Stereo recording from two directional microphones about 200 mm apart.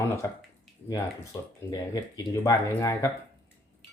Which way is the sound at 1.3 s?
15° left (ahead or behind).